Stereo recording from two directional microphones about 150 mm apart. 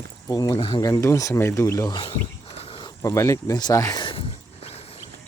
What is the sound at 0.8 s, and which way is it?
Speech, 20° left (ahead or behind).